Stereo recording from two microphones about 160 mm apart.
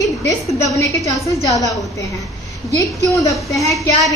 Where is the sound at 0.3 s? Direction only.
20° left (ahead or behind).